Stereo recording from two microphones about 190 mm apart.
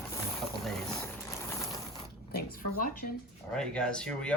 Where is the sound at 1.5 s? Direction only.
15° left (ahead or behind).